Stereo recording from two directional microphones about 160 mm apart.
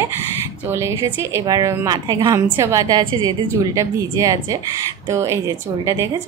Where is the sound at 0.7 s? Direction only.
15° right (ahead or behind).